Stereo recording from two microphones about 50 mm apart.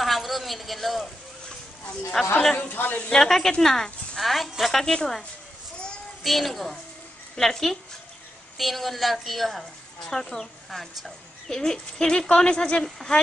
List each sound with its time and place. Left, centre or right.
0.0 s a sound: centre
2.2 s speech: centre
2.7 s a woman's voice: left
3.1 s speech: centre
6.2 s a woman's voice: centre
11.4 s speech: centre